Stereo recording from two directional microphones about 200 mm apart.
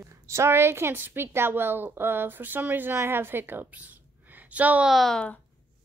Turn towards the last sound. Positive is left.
turn(degrees=5)  # may be behind; listen again after turning